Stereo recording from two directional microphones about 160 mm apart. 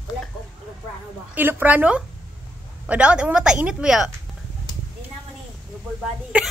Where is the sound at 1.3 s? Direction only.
10° right (ahead or behind).